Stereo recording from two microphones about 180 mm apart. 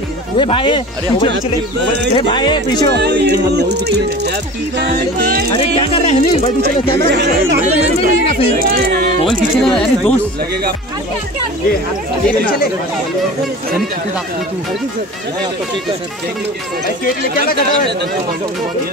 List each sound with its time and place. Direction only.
0.4 s speech: 30° left (ahead or behind)
3.0 s speech: 65° right (ahead or behind)
5.5 s speech: 30° left (ahead or behind)
7.1 s speech: 65° right (ahead or behind)
8.5 s speech: 55° right (ahead or behind)
9.6 s speech: 5° left (ahead or behind)